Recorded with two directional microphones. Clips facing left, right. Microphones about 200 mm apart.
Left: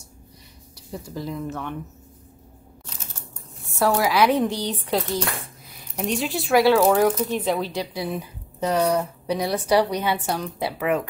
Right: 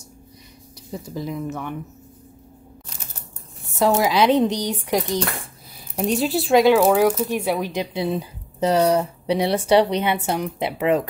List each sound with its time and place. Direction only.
0.9 s speech: 15° right (ahead or behind)
3.6 s speech: 20° right (ahead or behind)
5.9 s speech: 35° right (ahead or behind)
6.5 s speech: 20° right (ahead or behind)